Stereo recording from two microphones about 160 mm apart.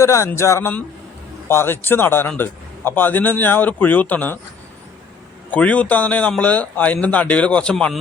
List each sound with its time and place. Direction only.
0.0 s a man's voice: 20° left (ahead or behind)
5.5 s a man's voice: 10° left (ahead or behind)